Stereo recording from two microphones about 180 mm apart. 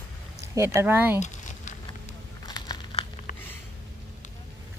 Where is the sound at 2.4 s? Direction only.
25° left (ahead or behind).